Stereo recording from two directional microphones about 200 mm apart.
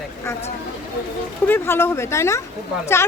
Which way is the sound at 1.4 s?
10° left (ahead or behind).